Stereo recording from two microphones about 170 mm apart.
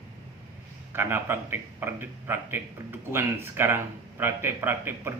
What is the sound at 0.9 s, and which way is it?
A man's voice, 15° right (ahead or behind).